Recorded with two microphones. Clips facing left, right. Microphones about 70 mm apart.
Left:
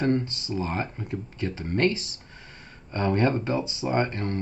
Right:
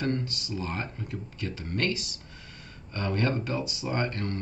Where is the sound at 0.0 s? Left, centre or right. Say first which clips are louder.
Left 5 dB; left.